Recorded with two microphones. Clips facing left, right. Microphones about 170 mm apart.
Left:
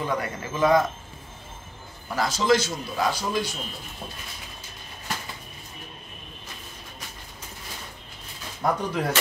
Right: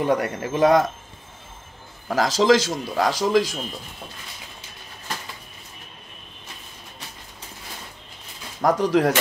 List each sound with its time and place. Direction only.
0.0 s speech: 65° right (ahead or behind)
2.0 s a man's voice: 90° right
8.6 s a man's voice: 90° right